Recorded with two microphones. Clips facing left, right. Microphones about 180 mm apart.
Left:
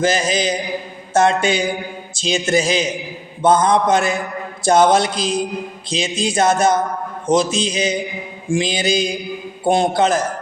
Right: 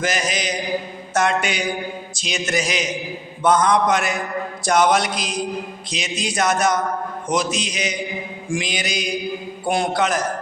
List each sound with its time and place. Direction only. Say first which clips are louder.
0.0 s music: left 6 dB; 30° left (ahead or behind)